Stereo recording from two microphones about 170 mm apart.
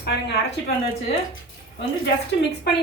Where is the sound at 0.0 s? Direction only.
70° left (ahead or behind).